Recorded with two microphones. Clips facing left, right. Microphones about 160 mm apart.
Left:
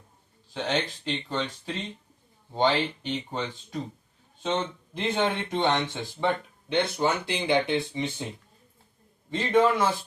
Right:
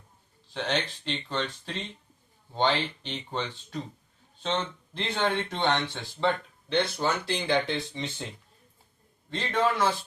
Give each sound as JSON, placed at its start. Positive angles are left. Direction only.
{"t": 1.0, "sound": "speech", "side_deg": 5}
{"t": 9.3, "sound": "speech", "side_deg": 10}